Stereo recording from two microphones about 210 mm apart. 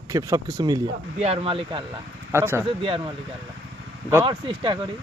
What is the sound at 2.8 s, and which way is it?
Speech, 25° right (ahead or behind).